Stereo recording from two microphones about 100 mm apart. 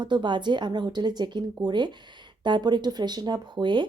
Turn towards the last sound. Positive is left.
turn(degrees=-50)  # may be behind; listen again after turning